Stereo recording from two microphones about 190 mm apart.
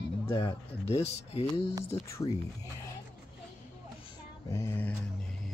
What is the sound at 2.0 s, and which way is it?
Speech, 15° left (ahead or behind).